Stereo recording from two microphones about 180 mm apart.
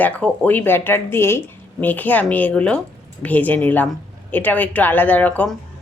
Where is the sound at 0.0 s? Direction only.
10° left (ahead or behind).